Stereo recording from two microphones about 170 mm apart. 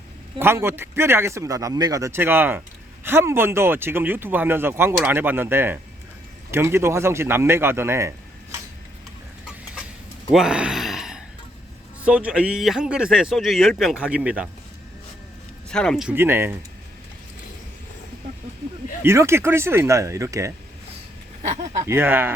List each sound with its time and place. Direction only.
0.3 s speech: 15° right (ahead or behind)
10.3 s gasp: 5° right (ahead or behind)
12.0 s speech: 5° right (ahead or behind)
15.7 s speech: 5° left (ahead or behind)
16.0 s speech: 15° right (ahead or behind)
19.0 s speech: 15° right (ahead or behind)
21.4 s speech: 45° right (ahead or behind)
21.8 s speech: 10° right (ahead or behind)